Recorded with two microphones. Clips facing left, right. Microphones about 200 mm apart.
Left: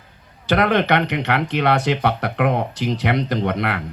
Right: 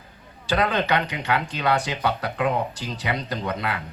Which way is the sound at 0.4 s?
70° left (ahead or behind).